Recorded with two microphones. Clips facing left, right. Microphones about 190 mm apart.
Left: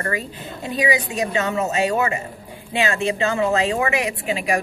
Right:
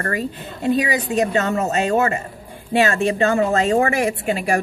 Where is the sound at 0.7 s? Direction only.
45° right (ahead or behind).